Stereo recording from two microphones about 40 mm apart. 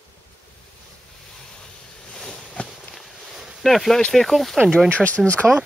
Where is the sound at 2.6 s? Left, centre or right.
Left.